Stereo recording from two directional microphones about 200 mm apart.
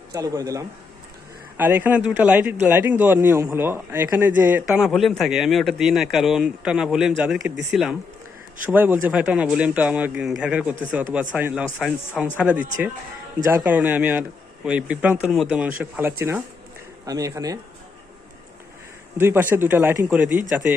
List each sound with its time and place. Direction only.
0.1 s a man's voice: 15° right (ahead or behind)
19.1 s a man's voice: 10° right (ahead or behind)